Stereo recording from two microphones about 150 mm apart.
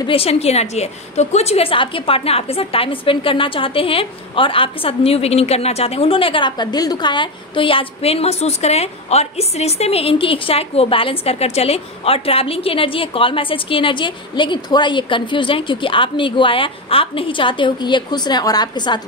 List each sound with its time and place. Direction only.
0.0 s a woman's voice: 40° left (ahead or behind)